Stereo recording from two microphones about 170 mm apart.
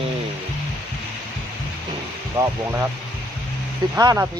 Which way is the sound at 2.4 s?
15° right (ahead or behind).